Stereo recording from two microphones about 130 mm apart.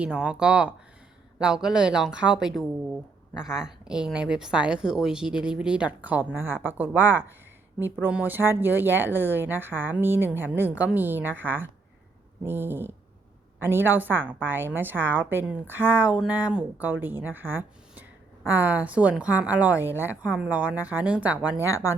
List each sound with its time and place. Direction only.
0.0 s speech: 10° right (ahead or behind)
21.6 s speech: 25° left (ahead or behind)